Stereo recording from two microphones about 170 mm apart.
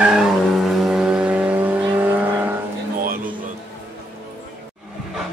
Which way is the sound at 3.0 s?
55° right (ahead or behind).